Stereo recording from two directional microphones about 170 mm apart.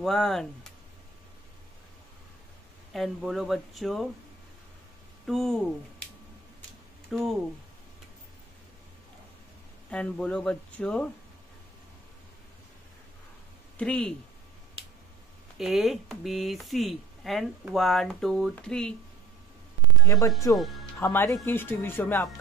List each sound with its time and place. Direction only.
0.0 s speech: centre (ahead or behind)
2.9 s speech: centre (ahead or behind)
5.2 s speech: centre (ahead or behind)
7.1 s speech: centre (ahead or behind)
9.8 s speech: 5° left (ahead or behind)
13.7 s speech: 5° left (ahead or behind)
15.5 s speech: centre (ahead or behind)
20.1 s speech: 20° left (ahead or behind)
20.5 s speech: centre (ahead or behind)
21.0 s speech: 15° left (ahead or behind)